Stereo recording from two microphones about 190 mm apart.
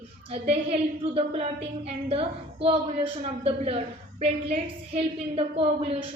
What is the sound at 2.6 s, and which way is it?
A woman's voice, 30° right (ahead or behind).